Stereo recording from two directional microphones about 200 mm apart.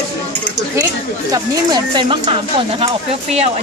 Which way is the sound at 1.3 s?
20° right (ahead or behind).